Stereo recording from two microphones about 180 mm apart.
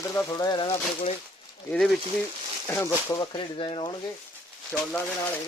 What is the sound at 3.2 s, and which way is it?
Speech, 30° left (ahead or behind).